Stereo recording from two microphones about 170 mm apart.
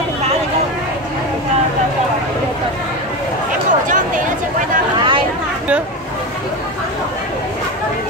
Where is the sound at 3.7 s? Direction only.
50° right (ahead or behind).